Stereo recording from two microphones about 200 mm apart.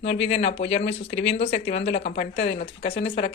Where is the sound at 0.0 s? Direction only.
30° left (ahead or behind).